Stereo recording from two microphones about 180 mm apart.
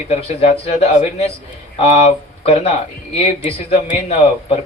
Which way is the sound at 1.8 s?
40° left (ahead or behind).